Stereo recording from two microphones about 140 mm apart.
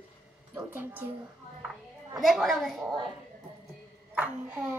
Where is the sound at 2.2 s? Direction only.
Centre (ahead or behind).